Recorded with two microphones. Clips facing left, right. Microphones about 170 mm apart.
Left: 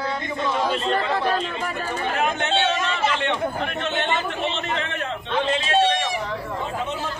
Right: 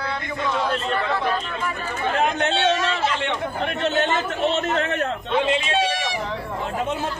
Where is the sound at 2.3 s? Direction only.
40° right (ahead or behind).